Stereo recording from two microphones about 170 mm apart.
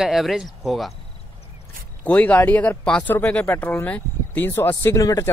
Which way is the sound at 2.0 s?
10° left (ahead or behind).